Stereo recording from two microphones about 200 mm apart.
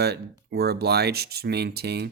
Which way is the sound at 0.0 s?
55° right (ahead or behind).